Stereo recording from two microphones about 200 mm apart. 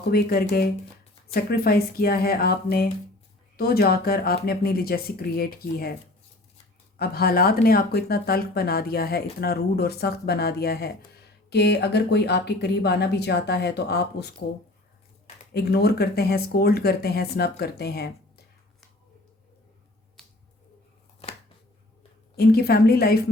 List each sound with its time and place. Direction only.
0.1 s speech: 50° left (ahead or behind)
7.0 s speech: 50° left (ahead or behind)
15.5 s speech: 50° left (ahead or behind)
20.2 s finger snapping: 5° left (ahead or behind)
22.4 s speech: 50° left (ahead or behind)